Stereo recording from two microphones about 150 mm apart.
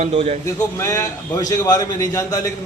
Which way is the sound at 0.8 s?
20° left (ahead or behind).